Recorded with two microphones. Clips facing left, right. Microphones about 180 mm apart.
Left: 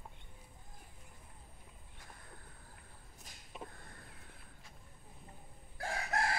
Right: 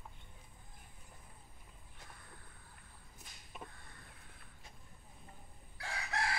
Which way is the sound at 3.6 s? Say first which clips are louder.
Left 3 dB; 45° left (ahead or behind).